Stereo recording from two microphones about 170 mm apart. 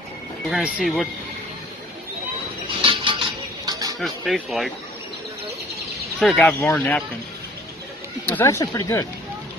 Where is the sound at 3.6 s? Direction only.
20° right (ahead or behind).